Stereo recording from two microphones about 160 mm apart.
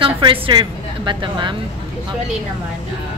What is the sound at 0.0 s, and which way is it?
A woman's voice, 30° right (ahead or behind).